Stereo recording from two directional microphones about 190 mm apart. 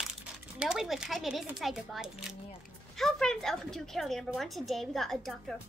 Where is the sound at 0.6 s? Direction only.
5° right (ahead or behind).